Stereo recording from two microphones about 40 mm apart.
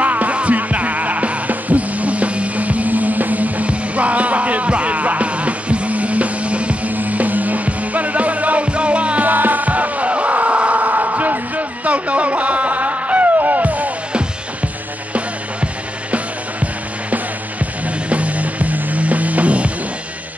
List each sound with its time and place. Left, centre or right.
0.0 s music: right
6.9 s music: right
9.3 s music: right
15.1 s music: right
17.8 s music: right